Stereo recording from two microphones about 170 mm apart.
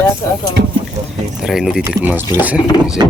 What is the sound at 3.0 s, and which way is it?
Speech, 25° right (ahead or behind).